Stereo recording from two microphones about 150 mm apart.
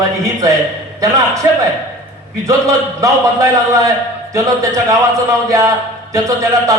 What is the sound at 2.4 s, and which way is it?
Speech, 20° right (ahead or behind).